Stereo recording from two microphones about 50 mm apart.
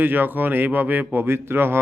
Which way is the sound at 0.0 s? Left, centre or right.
Right.